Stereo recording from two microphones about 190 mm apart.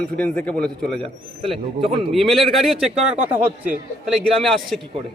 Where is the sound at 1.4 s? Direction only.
25° right (ahead or behind).